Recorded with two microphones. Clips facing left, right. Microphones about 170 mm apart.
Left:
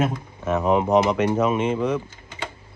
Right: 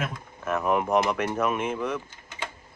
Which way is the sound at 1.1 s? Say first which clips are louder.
Left 6 dB; centre (ahead or behind).